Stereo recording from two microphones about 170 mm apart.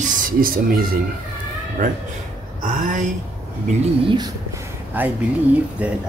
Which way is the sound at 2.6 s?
50° right (ahead or behind).